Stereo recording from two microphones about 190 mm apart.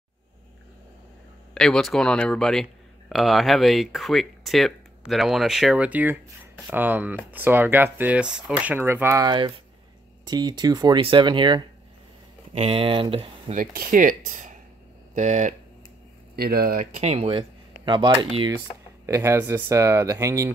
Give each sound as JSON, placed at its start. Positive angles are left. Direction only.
{"t": 1.5, "sound": "speech", "side_deg": 0}
{"t": 13.6, "sound": "speech", "side_deg": -45}
{"t": 16.3, "sound": "speech", "side_deg": -55}